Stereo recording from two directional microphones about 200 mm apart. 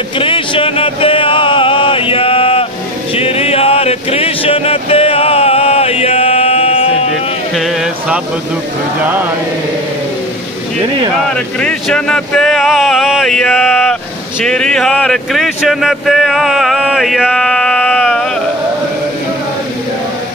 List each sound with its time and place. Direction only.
0.2 s music: 25° left (ahead or behind)
11.6 s speech: 5° left (ahead or behind)